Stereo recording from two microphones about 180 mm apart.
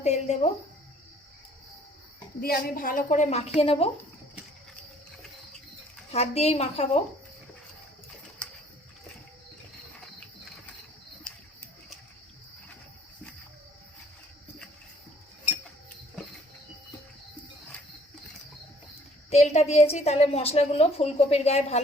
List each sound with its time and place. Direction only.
0.0 s speech: 40° left (ahead or behind)
2.4 s a woman's voice: 55° left (ahead or behind); by 3.8 s 35° left (ahead or behind)
6.1 s a woman's voice: 35° left (ahead or behind)
19.3 s a woman's voice: 35° left (ahead or behind)